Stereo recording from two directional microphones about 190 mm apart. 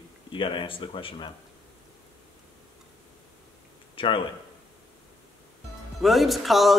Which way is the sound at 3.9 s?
25° left (ahead or behind).